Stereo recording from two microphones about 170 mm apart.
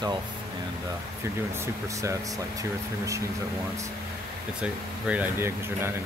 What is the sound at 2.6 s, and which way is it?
Speech, 20° right (ahead or behind).